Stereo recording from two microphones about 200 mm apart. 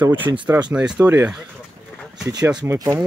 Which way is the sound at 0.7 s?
5° right (ahead or behind).